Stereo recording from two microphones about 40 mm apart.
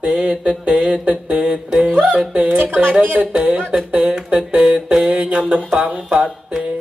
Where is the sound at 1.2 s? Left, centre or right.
Right.